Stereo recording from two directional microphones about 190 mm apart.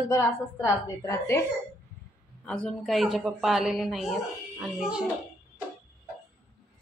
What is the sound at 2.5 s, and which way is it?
Speech, 5° left (ahead or behind).